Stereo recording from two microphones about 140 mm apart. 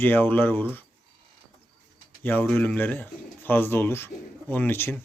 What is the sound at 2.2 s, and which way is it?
Speech, 15° left (ahead or behind).